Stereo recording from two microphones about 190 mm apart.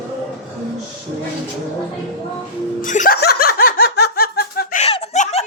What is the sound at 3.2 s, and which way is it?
Laughter, 55° left (ahead or behind).